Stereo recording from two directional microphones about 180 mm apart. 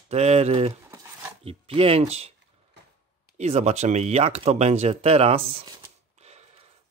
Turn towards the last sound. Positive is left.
turn(degrees=-35)  # may be behind; listen again after turning